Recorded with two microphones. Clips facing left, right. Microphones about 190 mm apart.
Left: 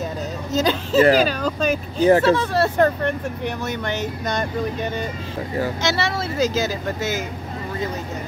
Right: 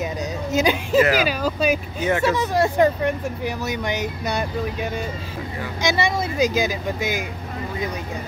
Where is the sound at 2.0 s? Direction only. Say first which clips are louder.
Left 10 dB; 35° left (ahead or behind).